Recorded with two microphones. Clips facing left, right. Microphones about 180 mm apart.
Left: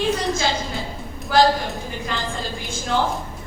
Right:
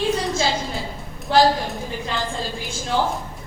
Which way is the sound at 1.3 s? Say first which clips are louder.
Even; 25° right (ahead or behind).